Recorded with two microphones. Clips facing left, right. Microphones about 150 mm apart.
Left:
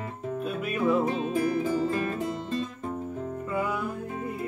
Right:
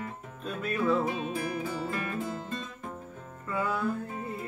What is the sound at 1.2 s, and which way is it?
Music, 30° left (ahead or behind).